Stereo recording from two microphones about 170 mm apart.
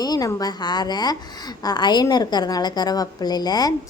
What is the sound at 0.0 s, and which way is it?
A woman's voice, 20° left (ahead or behind).